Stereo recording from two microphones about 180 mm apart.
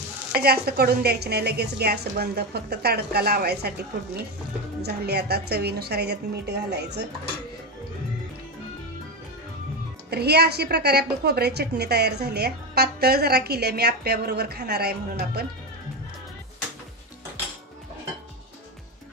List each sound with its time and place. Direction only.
0.3 s a woman's voice: 60° right (ahead or behind)
10.0 s a woman's voice: 65° right (ahead or behind)